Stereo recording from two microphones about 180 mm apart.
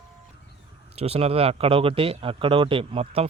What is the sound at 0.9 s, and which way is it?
Speech, 35° right (ahead or behind).